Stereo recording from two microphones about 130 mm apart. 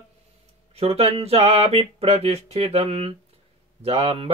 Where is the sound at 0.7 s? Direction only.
50° right (ahead or behind).